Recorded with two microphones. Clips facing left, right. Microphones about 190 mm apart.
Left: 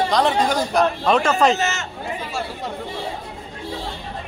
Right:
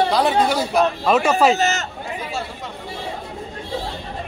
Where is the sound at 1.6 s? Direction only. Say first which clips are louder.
Right 3 dB; 40° right (ahead or behind).